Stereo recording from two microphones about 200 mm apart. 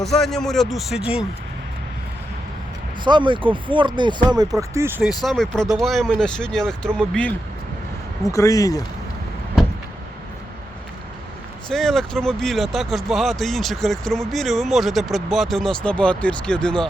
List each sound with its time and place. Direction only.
0.0 s speech: centre (ahead or behind)
3.0 s speech: 25° right (ahead or behind)
5.2 s speech: centre (ahead or behind)
8.3 s speech: 15° left (ahead or behind)
11.7 s speech: centre (ahead or behind)